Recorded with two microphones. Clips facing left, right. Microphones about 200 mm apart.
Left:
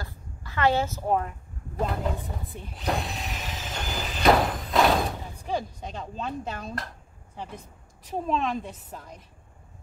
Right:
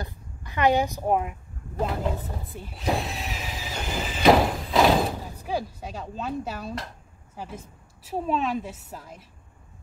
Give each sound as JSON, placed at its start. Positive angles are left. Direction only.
{"t": 0.0, "sound": "speech", "side_deg": -20}
{"t": 1.8, "sound": "a woman's voice", "side_deg": 0}